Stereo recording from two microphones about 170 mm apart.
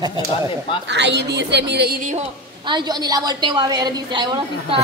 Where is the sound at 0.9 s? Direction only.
90° right; by 2.1 s 60° right (ahead or behind).